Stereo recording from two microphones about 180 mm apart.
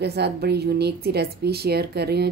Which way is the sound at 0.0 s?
65° right (ahead or behind).